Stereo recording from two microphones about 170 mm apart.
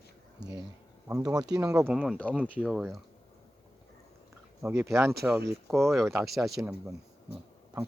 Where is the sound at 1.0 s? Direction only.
20° right (ahead or behind).